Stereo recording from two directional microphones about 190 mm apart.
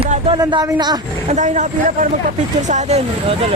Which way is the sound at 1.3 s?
40° right (ahead or behind).